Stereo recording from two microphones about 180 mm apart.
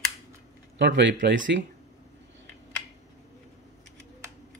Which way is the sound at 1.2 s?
90° right.